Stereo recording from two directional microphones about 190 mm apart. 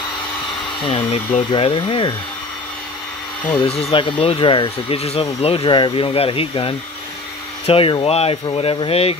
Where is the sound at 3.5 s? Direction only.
30° left (ahead or behind).